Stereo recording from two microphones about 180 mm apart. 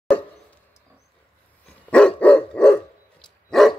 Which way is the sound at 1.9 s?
5° left (ahead or behind).